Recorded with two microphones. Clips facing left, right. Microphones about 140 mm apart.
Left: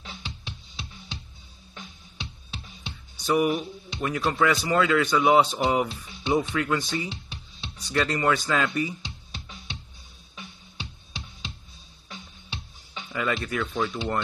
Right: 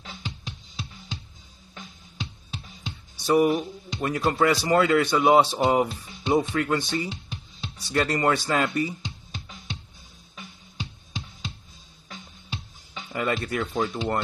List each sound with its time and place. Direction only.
0.0 s music: 45° right (ahead or behind)
3.3 s speech: 40° right (ahead or behind)
8.5 s music: 40° right (ahead or behind)